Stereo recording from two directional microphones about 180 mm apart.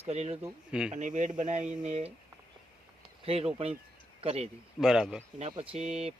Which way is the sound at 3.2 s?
35° right (ahead or behind).